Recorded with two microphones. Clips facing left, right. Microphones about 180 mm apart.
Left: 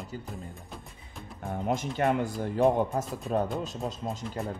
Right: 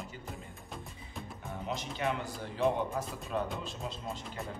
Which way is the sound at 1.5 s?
50° left (ahead or behind).